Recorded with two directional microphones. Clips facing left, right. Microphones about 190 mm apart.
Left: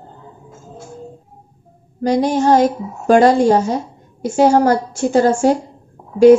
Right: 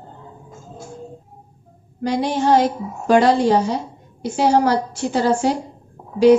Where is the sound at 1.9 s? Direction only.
45° left (ahead or behind).